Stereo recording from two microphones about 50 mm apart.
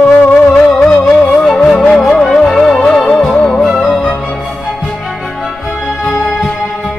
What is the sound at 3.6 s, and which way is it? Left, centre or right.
Music, centre.